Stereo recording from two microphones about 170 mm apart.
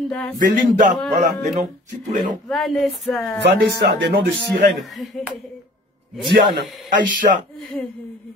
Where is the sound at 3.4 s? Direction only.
75° right (ahead or behind).